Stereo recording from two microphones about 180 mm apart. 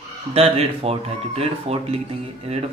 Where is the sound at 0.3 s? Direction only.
35° right (ahead or behind).